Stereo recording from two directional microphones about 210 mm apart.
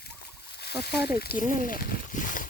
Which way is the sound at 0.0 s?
50° left (ahead or behind).